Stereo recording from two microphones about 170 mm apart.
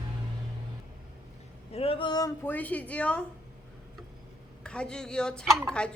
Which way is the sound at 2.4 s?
10° left (ahead or behind).